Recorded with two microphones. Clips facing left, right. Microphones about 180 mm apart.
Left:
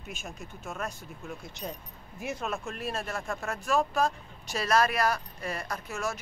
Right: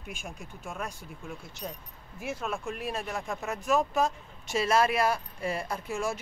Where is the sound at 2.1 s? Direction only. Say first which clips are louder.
Even; 5° right (ahead or behind).